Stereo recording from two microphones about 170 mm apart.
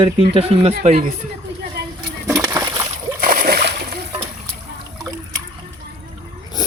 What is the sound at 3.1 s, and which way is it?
Splash, 55° right (ahead or behind).